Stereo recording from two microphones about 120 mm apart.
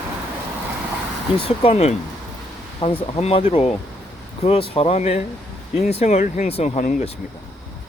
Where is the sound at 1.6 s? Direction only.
65° left (ahead or behind).